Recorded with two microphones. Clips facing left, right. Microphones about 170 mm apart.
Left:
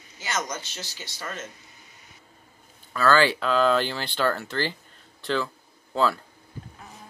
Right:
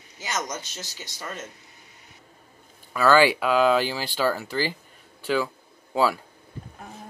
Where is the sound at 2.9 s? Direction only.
10° right (ahead or behind).